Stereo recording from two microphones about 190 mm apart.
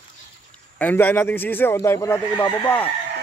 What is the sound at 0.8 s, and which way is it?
Speech, 10° left (ahead or behind).